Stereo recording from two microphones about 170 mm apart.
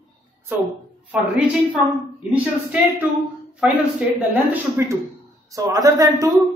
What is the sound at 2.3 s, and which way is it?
Speech, 10° right (ahead or behind).